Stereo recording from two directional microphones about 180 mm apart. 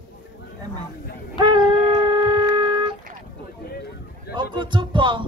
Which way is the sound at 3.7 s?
60° left (ahead or behind).